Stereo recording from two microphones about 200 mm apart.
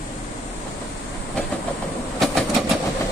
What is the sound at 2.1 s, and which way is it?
Train, centre (ahead or behind).